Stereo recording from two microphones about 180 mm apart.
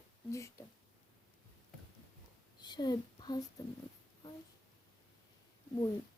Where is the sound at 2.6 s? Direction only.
25° left (ahead or behind).